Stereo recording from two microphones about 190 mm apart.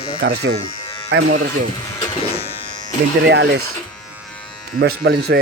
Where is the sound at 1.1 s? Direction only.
75° right (ahead or behind).